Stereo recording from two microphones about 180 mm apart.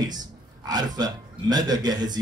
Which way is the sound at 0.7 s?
20° right (ahead or behind).